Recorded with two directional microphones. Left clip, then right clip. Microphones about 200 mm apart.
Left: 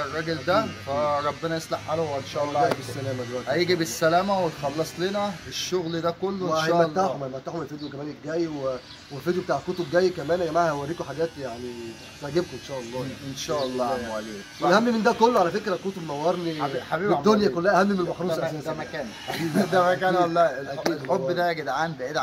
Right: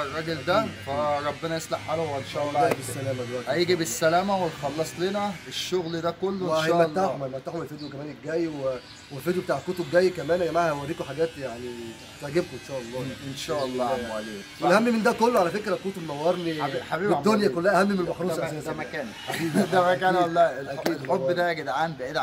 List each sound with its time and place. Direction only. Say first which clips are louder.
0.0 s speech: left 1 dB; 5° left (ahead or behind)
9.2 s speech: left 1 dB; 20° right (ahead or behind)
13.6 s speech: even; 5° left (ahead or behind)
14.7 s speech: left 1 dB; 25° right (ahead or behind)
16.5 s speech: left 1 dB; centre (ahead or behind)
17.2 s a man's voice: left 2 dB; 20° right (ahead or behind)
18.4 s speech: left 1 dB; centre (ahead or behind)